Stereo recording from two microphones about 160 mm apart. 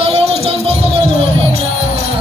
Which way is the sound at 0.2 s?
40° right (ahead or behind).